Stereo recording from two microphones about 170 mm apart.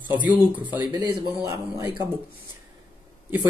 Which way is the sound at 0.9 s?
25° right (ahead or behind).